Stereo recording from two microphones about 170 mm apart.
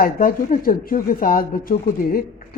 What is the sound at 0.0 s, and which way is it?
Speech, 55° left (ahead or behind).